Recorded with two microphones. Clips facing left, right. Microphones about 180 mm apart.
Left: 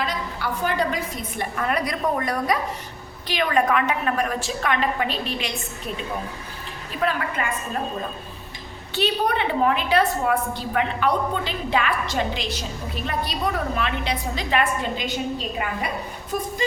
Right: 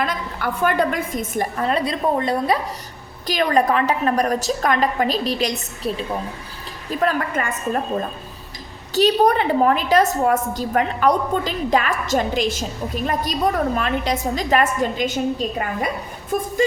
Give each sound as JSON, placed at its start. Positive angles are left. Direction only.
{"t": 0.0, "sound": "a woman's voice", "side_deg": -50}
{"t": 3.2, "sound": "a woman's voice", "side_deg": -40}
{"t": 7.0, "sound": "a woman's voice", "side_deg": -45}
{"t": 9.0, "sound": "a woman's voice", "side_deg": -40}
{"t": 13.7, "sound": "a woman's voice", "side_deg": -45}